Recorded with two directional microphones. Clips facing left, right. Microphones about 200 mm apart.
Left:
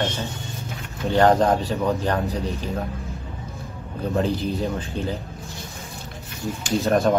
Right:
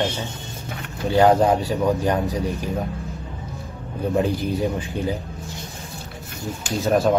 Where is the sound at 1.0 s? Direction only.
Centre (ahead or behind).